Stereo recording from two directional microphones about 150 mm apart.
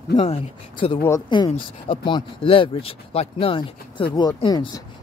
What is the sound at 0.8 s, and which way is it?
Speech, 40° left (ahead or behind).